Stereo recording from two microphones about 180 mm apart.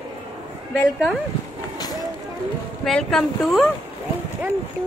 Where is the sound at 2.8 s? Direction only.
Centre (ahead or behind).